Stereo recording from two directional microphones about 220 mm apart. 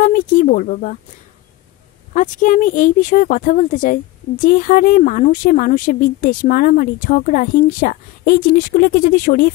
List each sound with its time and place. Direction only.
0.0 s speech: 40° left (ahead or behind)
2.1 s speech: 35° left (ahead or behind)